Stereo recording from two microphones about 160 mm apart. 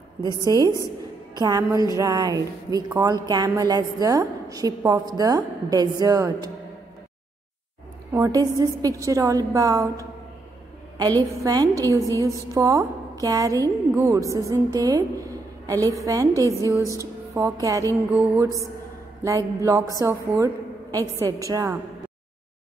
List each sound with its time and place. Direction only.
0.4 s music: 25° right (ahead or behind)
8.1 s music: 20° right (ahead or behind)
17.0 s speech: 20° right (ahead or behind)
18.4 s music: 20° right (ahead or behind)